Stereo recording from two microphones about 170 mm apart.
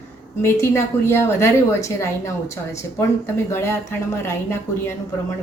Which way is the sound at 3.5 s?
15° left (ahead or behind).